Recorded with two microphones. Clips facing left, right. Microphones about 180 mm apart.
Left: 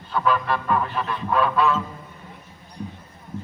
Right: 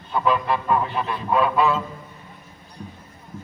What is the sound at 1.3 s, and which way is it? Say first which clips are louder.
Honk: right 1 dB; 15° right (ahead or behind).